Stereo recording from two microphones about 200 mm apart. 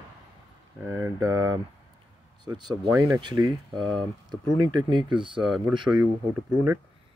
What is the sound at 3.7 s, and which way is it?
Speech, centre (ahead or behind).